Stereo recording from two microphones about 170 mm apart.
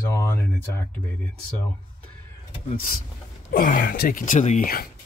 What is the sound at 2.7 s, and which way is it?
Speech, 50° left (ahead or behind).